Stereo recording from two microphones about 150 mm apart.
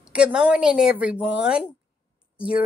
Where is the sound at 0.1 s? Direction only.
5° right (ahead or behind).